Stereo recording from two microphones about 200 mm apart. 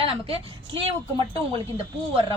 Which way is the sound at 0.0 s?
30° right (ahead or behind).